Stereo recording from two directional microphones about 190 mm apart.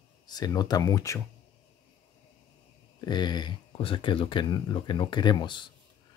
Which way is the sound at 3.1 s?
25° left (ahead or behind).